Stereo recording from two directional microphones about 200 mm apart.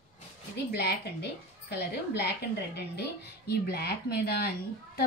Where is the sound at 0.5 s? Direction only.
55° left (ahead or behind).